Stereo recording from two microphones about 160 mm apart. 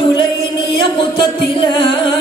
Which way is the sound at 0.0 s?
30° left (ahead or behind).